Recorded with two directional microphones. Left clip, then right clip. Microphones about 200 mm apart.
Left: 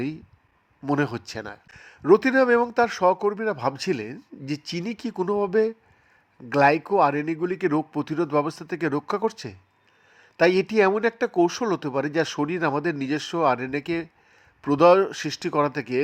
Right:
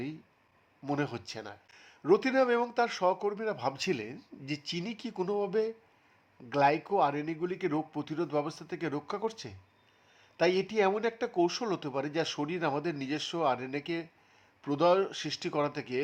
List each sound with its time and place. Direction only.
0.9 s speech: 25° left (ahead or behind)